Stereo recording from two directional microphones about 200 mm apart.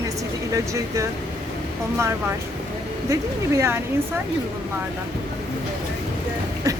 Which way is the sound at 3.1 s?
15° right (ahead or behind).